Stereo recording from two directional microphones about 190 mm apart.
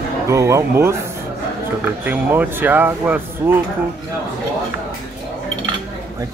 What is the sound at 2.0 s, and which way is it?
Speech, 10° right (ahead or behind).